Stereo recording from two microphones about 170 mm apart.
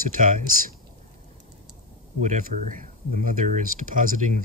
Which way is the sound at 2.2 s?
45° right (ahead or behind).